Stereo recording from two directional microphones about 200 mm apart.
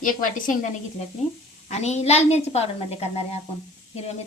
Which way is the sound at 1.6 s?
35° left (ahead or behind).